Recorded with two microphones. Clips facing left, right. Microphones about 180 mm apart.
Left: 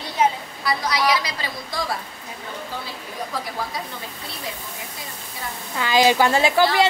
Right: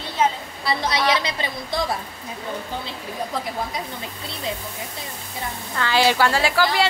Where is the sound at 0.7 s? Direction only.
25° right (ahead or behind).